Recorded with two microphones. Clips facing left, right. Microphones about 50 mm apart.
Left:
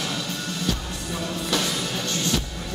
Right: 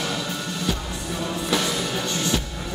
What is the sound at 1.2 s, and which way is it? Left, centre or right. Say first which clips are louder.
Music: right 2 dB; centre.